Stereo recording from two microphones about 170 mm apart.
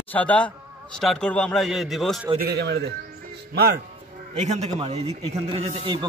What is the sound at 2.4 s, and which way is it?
Speech, 80° right.